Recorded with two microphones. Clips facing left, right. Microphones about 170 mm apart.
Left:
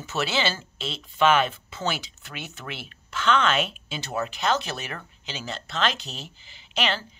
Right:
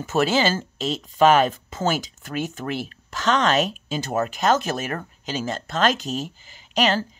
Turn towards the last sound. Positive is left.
turn(degrees=-40)  # may be behind; listen again after turning